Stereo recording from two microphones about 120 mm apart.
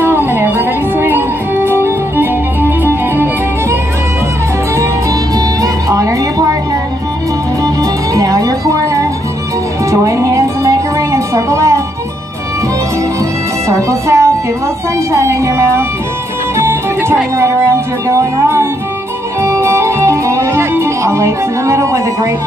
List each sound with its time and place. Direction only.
0.0 s music: 15° right (ahead or behind)
5.3 s music: 30° right (ahead or behind)
7.6 s music: 30° right (ahead or behind)
13.7 s music: 25° right (ahead or behind)